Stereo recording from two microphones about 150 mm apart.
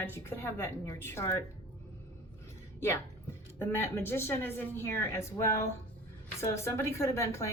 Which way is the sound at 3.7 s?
15° left (ahead or behind).